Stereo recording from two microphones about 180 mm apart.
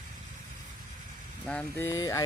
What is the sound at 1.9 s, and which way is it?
Speech, 15° left (ahead or behind).